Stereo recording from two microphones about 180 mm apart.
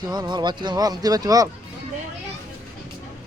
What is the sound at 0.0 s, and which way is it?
Speech, 25° right (ahead or behind).